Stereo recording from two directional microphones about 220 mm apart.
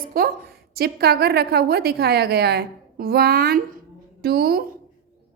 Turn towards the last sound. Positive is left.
turn(degrees=-45)  # may be behind; listen again after turning